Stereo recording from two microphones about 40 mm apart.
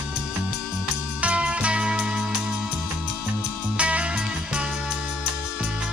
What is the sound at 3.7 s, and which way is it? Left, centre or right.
Music, right.